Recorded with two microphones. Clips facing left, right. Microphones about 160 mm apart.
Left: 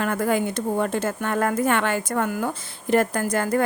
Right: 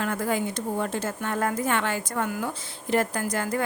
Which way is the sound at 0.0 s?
60° left (ahead or behind).